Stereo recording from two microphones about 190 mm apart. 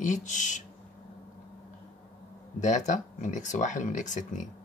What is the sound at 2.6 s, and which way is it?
Speech, 40° left (ahead or behind).